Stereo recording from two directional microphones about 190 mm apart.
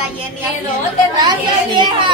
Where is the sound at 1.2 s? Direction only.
25° right (ahead or behind).